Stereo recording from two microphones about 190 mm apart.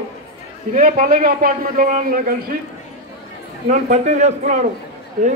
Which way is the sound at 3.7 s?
40° right (ahead or behind).